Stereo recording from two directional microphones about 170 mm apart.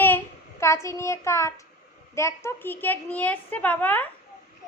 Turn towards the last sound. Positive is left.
turn(degrees=10)  # may be behind; listen again after turning